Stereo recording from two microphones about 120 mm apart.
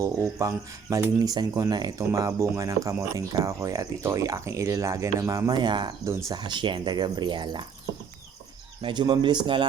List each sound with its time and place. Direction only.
0.0 s speech: 25° right (ahead or behind)
6.1 s speech: 25° right (ahead or behind)
8.8 s speech: 40° right (ahead or behind)